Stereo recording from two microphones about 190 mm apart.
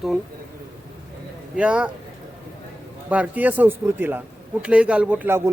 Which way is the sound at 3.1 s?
10° right (ahead or behind).